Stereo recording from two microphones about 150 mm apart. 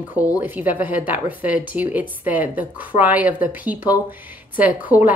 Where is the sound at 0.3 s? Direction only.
10° right (ahead or behind).